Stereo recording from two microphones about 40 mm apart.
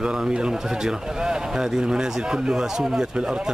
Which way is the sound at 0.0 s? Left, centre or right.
Centre.